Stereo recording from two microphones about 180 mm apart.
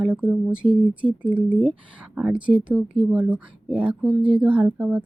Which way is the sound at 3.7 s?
30° right (ahead or behind).